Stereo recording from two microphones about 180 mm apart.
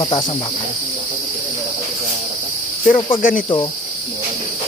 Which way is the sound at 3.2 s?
50° left (ahead or behind).